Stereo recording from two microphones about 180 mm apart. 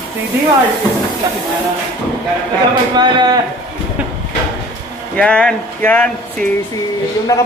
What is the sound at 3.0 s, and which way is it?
Speech, 25° right (ahead or behind).